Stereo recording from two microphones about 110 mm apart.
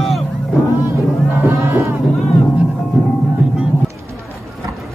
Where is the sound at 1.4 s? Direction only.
25° right (ahead or behind).